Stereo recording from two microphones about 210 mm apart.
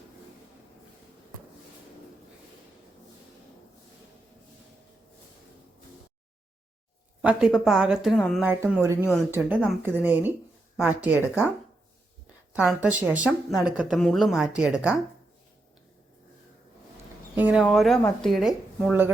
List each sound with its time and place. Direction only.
7.2 s a woman's voice: 5° right (ahead or behind)
8.4 s speech: 10° right (ahead or behind)
12.5 s a woman's voice: 5° right (ahead or behind)
17.3 s a woman's voice: 5° right (ahead or behind)